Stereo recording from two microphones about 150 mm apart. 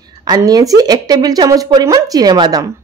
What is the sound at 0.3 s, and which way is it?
A woman's voice, 25° right (ahead or behind).